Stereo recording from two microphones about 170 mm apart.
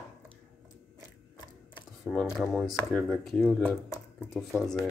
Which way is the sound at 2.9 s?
Centre (ahead or behind).